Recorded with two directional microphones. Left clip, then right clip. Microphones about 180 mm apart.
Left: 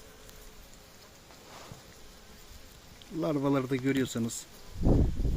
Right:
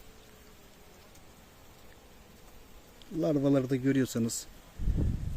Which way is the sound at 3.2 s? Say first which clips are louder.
Right 2 dB; 20° right (ahead or behind).